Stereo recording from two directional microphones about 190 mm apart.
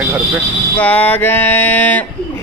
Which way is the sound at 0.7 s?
10° left (ahead or behind).